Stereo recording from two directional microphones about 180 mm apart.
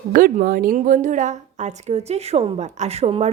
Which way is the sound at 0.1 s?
50° right (ahead or behind).